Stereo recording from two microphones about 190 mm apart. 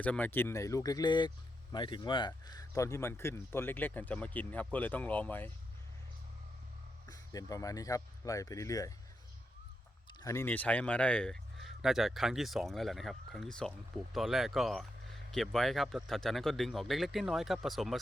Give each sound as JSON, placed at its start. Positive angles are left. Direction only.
{"t": 0.0, "sound": "speech", "side_deg": 10}
{"t": 7.1, "sound": "speech", "side_deg": 20}
{"t": 10.1, "sound": "speech", "side_deg": 20}